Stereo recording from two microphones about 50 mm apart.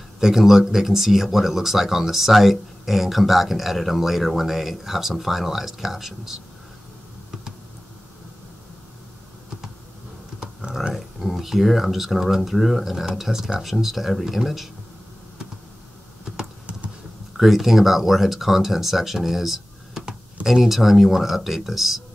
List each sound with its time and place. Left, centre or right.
0.2 s speech: centre
10.7 s speech: centre
17.4 s speech: centre